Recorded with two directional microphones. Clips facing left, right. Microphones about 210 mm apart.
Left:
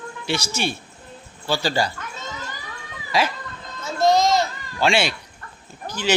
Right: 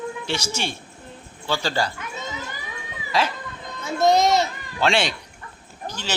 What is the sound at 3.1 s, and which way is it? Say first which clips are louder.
Speech: left 1 dB; 10° left (ahead or behind).